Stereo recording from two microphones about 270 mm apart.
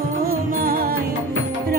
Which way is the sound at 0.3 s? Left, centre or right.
Right.